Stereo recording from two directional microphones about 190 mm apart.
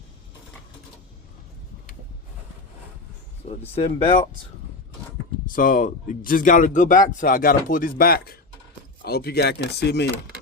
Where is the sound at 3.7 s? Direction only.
30° left (ahead or behind).